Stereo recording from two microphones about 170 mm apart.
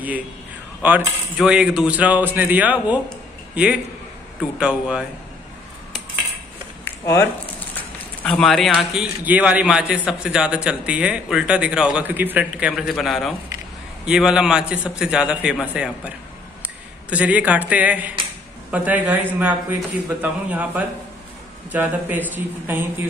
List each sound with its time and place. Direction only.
0.8 s a man's voice: 5° right (ahead or behind)
6.8 s a sound: 15° left (ahead or behind)
8.2 s a man's voice: 5° left (ahead or behind)
17.1 s a man's voice: 10° right (ahead or behind)